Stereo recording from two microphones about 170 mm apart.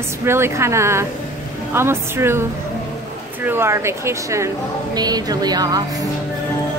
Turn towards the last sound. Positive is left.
turn(degrees=-25)  # may be behind; listen again after turning